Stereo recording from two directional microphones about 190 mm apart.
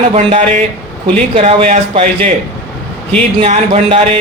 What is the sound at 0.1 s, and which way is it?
Speech, 35° right (ahead or behind).